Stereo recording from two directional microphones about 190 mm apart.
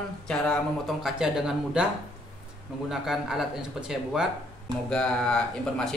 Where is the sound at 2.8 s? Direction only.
Centre (ahead or behind).